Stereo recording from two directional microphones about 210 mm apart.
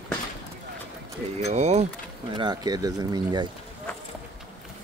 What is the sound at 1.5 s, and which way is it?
Speech, 30° right (ahead or behind).